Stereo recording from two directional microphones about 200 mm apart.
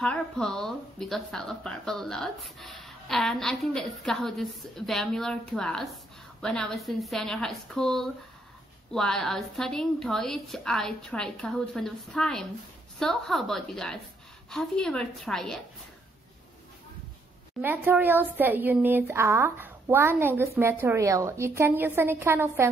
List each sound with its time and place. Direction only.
0.0 s a woman's voice: 5° left (ahead or behind)
17.6 s speech: 10° right (ahead or behind)